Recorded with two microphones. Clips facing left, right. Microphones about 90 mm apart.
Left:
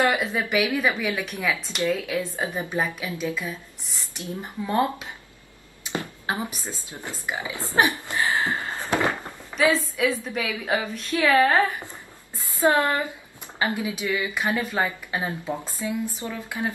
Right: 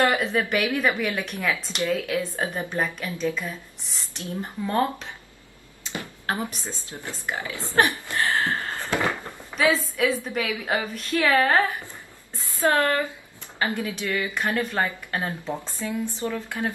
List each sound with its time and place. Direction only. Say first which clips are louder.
0.1 s a woman's voice: right 1 dB; 5° left (ahead or behind)
5.9 s a sound: left 4 dB; 15° left (ahead or behind)
6.2 s speech: right 5 dB; 15° left (ahead or behind)
10.2 s a woman's voice: right 1 dB; centre (ahead or behind)
12.5 s speech: left 1 dB; 20° left (ahead or behind)